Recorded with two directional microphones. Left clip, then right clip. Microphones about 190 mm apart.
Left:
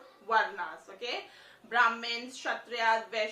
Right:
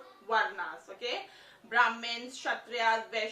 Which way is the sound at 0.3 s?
15° left (ahead or behind).